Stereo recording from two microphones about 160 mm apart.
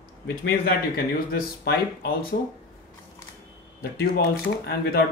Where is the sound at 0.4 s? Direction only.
70° left (ahead or behind).